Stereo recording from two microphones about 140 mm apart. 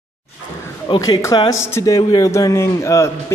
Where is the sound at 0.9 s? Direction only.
25° left (ahead or behind).